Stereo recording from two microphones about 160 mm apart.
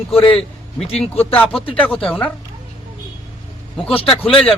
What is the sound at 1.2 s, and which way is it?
Speech, 10° left (ahead or behind).